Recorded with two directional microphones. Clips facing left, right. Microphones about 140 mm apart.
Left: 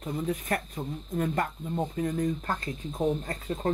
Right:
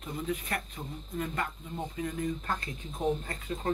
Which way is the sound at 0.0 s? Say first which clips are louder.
Left 4 dB; 40° left (ahead or behind).